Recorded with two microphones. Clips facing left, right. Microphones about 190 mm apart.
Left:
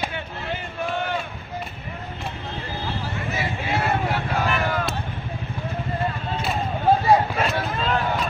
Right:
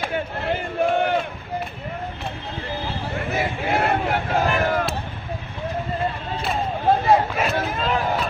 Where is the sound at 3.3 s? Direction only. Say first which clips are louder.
Right 4 dB; 55° right (ahead or behind).